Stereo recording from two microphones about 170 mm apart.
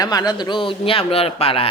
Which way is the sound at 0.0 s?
20° left (ahead or behind).